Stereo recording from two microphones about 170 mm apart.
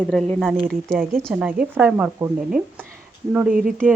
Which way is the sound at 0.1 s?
Centre (ahead or behind).